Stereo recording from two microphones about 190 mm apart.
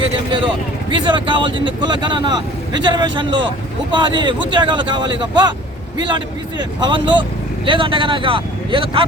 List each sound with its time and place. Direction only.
0.0 s speech: 25° right (ahead or behind)